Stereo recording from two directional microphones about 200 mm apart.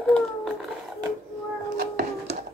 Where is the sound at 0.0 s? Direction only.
Centre (ahead or behind).